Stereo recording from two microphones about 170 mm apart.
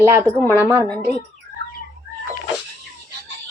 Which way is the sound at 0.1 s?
15° right (ahead or behind).